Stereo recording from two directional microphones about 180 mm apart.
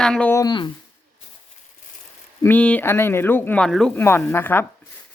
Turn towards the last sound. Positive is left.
turn(degrees=10)  # may be behind; listen again after turning